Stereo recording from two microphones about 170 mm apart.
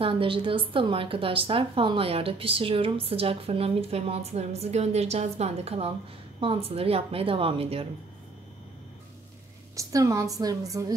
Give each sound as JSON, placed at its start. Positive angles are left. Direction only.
{"t": 0.0, "sound": "a woman's voice", "side_deg": -30}
{"t": 9.8, "sound": "a woman's voice", "side_deg": -20}